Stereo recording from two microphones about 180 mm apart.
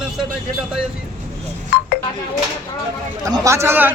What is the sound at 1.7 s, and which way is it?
Speech, 60° left (ahead or behind).